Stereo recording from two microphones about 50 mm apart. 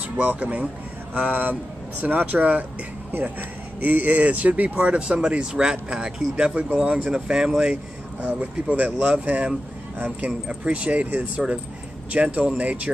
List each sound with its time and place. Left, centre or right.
0.2 s speech: right
7.7 s speech: right
10.5 s speech: right